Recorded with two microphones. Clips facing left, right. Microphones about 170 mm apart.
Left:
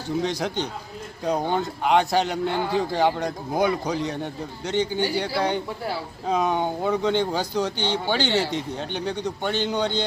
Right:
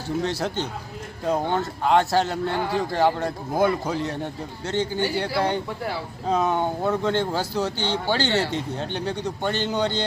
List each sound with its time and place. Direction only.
0.2 s a man's voice: 5° right (ahead or behind)
1.5 s speech: 15° left (ahead or behind)
2.0 s a man's voice: centre (ahead or behind)
2.2 s speech: 20° left (ahead or behind)
2.9 s a man's voice: 5° right (ahead or behind)
6.2 s speech: 10° left (ahead or behind)
6.5 s a man's voice: 5° right (ahead or behind)
8.3 s speech: 10° left (ahead or behind)
9.0 s speech: 10° right (ahead or behind)